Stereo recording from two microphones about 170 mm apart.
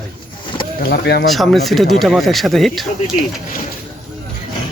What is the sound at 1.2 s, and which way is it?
Speech, centre (ahead or behind).